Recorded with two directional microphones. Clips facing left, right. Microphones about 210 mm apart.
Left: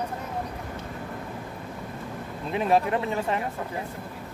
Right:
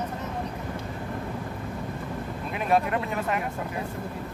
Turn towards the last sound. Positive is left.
turn(degrees=25)  # may be behind; listen again after turning